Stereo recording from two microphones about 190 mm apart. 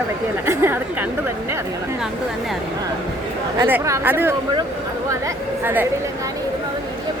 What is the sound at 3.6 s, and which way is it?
Speech, 15° right (ahead or behind).